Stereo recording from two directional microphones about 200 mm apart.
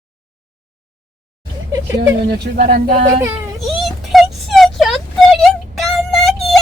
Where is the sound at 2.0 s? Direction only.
55° right (ahead or behind).